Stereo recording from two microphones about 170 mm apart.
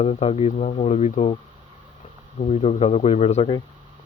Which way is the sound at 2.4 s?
40° left (ahead or behind).